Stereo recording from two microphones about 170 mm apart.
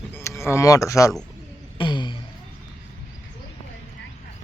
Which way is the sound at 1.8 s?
25° left (ahead or behind).